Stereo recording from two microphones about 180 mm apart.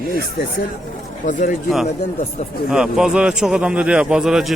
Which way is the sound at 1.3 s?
45° left (ahead or behind).